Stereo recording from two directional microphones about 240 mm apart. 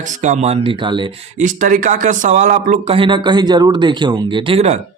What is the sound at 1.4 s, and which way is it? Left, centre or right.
A man's voice, right.